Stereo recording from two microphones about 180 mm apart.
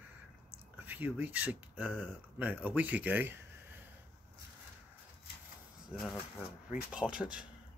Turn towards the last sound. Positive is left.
turn(degrees=-5)  # may be behind; listen again after turning